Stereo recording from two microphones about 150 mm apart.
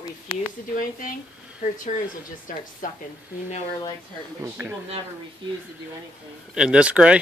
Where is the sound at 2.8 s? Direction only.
65° left (ahead or behind).